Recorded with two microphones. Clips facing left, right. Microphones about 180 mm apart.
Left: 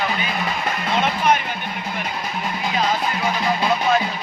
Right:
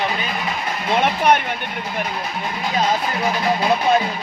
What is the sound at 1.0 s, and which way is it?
Speech, 65° right (ahead or behind).